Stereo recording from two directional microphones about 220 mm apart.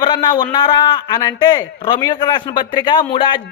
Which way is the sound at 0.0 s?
20° left (ahead or behind).